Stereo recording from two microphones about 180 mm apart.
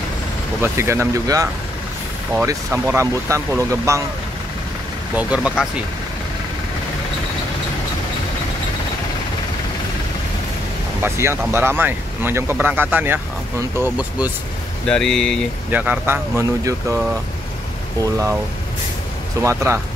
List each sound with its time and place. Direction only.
0.6 s speech: 15° right (ahead or behind)
5.1 s speech: 5° right (ahead or behind)
11.0 s speech: 15° right (ahead or behind)
14.9 s speech: 5° left (ahead or behind)
15.7 s speech: 10° right (ahead or behind)
19.4 s speech: 15° right (ahead or behind)